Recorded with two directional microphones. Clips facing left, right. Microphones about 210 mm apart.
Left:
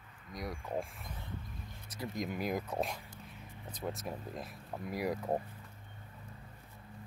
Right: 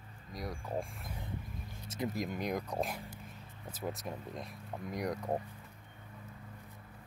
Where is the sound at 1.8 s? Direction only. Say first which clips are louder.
Right 6 dB; 25° right (ahead or behind).